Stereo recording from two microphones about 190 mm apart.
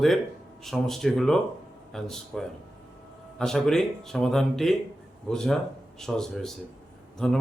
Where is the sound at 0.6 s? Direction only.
Centre (ahead or behind).